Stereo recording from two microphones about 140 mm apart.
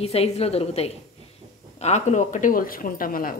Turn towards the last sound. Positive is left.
turn(degrees=90)